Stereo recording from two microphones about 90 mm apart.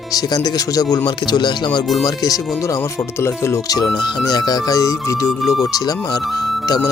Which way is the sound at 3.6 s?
40° left (ahead or behind).